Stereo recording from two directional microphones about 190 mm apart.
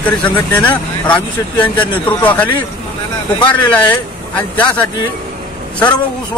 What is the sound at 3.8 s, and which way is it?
Speech, 10° left (ahead or behind).